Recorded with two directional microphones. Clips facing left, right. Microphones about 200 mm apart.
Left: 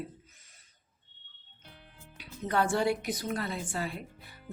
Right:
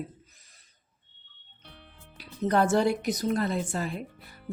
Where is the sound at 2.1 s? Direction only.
40° right (ahead or behind).